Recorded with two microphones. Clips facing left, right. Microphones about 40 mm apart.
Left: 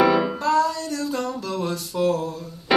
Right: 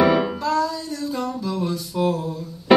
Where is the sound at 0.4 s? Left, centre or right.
Left.